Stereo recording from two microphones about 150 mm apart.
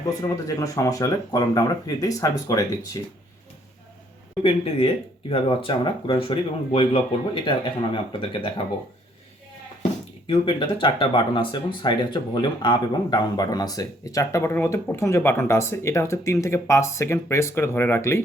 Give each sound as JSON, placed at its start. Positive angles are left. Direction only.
{"t": 0.2, "sound": "speech", "side_deg": 25}
{"t": 4.4, "sound": "speech", "side_deg": 40}
{"t": 10.2, "sound": "speech", "side_deg": 35}